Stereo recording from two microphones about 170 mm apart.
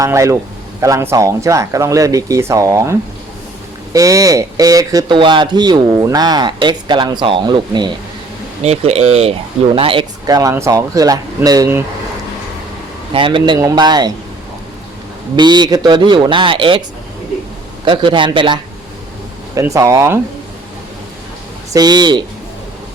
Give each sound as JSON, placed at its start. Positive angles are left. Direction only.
{"t": 0.0, "sound": "speech", "side_deg": -15}
{"t": 3.9, "sound": "speech", "side_deg": -20}
{"t": 8.6, "sound": "speech", "side_deg": -40}
{"t": 13.1, "sound": "speech", "side_deg": -30}
{"t": 15.4, "sound": "speech", "side_deg": -25}
{"t": 17.8, "sound": "speech", "side_deg": -30}
{"t": 21.7, "sound": "speech", "side_deg": -25}